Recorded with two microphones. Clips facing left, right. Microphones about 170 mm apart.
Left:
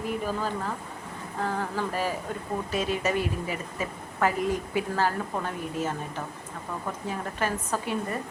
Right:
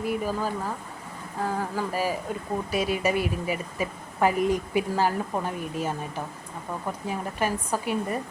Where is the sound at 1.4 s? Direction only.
10° right (ahead or behind).